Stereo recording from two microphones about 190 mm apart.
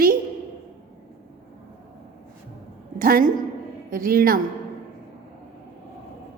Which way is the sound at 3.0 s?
50° right (ahead or behind).